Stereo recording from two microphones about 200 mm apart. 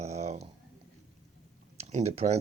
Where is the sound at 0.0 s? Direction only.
35° right (ahead or behind).